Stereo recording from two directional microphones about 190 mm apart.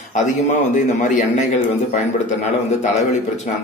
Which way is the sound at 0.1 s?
40° left (ahead or behind).